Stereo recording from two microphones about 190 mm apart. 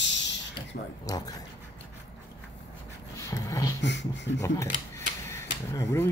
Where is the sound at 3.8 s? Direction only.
70° left (ahead or behind).